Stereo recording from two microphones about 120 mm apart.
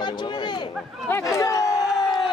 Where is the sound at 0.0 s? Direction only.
40° left (ahead or behind).